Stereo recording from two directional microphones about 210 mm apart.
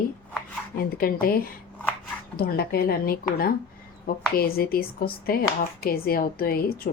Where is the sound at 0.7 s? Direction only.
45° left (ahead or behind).